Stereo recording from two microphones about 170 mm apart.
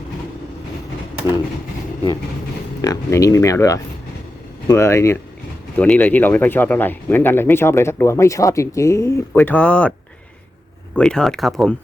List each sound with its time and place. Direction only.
2.8 s speech: 20° left (ahead or behind)
10.9 s speech: 5° left (ahead or behind)